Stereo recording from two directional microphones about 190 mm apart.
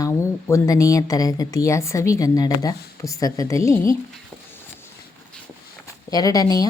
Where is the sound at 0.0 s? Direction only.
15° left (ahead or behind).